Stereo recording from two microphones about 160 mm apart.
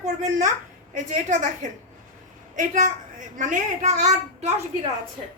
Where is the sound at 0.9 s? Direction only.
50° right (ahead or behind).